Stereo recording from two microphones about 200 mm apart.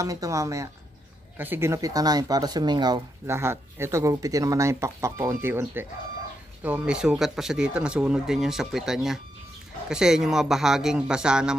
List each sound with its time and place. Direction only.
0.0 s speech: 15° right (ahead or behind)